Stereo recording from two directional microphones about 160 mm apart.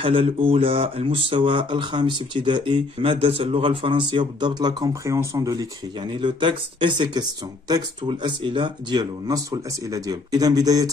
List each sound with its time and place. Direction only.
0.0 s speech: 35° right (ahead or behind)